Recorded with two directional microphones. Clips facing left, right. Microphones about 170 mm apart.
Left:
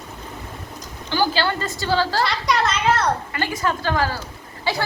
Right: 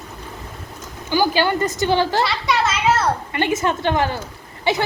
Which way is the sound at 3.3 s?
20° right (ahead or behind).